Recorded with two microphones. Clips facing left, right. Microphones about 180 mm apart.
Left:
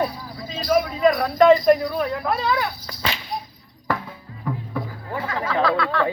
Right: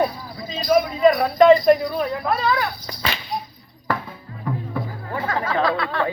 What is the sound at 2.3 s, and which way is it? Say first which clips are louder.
Speech: right 2 dB; 20° left (ahead or behind).